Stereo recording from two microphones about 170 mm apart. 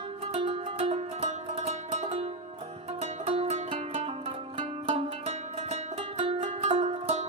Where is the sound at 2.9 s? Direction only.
40° right (ahead or behind).